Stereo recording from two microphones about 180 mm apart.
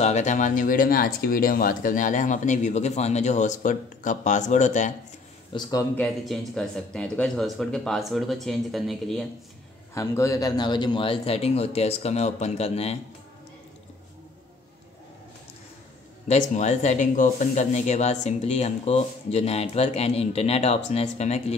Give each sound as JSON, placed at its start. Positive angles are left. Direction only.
{"t": 0.0, "sound": "speech", "side_deg": 40}
{"t": 5.5, "sound": "speech", "side_deg": 20}
{"t": 5.9, "sound": "speech", "side_deg": 5}
{"t": 9.9, "sound": "speech", "side_deg": 15}
{"t": 16.3, "sound": "speech", "side_deg": 40}